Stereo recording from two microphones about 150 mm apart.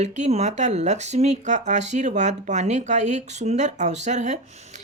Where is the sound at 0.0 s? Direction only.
45° right (ahead or behind).